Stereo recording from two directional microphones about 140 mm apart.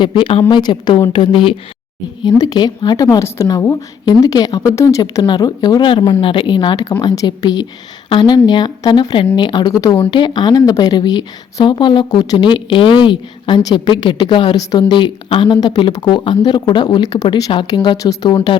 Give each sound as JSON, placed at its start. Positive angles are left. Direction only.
{"t": 0.0, "sound": "a woman's voice", "side_deg": 35}